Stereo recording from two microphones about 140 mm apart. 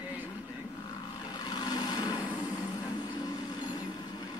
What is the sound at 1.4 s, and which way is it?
Vehicle, 30° left (ahead or behind).